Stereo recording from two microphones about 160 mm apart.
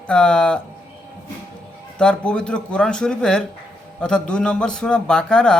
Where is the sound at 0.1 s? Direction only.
5° left (ahead or behind).